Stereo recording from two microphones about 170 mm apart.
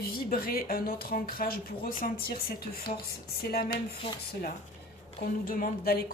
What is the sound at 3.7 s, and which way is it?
Speech, 25° left (ahead or behind).